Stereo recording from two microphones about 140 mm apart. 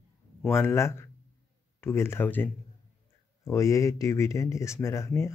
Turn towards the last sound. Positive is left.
turn(degrees=20)  # may be behind; listen again after turning